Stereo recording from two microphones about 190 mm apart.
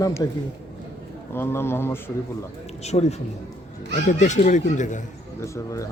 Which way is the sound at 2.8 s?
35° left (ahead or behind).